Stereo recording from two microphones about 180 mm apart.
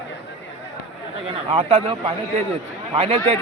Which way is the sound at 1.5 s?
30° right (ahead or behind).